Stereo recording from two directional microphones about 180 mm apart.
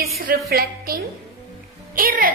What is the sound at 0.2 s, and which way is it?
A woman's voice, 55° right (ahead or behind).